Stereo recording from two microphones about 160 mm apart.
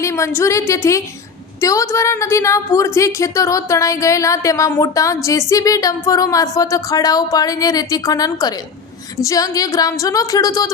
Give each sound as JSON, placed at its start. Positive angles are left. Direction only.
{"t": 0.0, "sound": "a woman's voice", "side_deg": 15}